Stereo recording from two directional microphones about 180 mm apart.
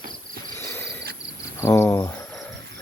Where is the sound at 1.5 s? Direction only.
15° left (ahead or behind).